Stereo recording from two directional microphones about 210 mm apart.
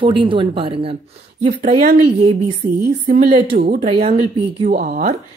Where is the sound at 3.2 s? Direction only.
45° right (ahead or behind).